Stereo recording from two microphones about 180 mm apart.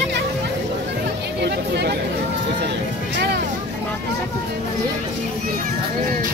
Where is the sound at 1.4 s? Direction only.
65° right (ahead or behind).